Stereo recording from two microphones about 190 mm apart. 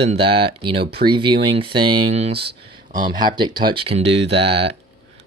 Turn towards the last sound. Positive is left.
turn(degrees=-30)  # may be behind; listen again after turning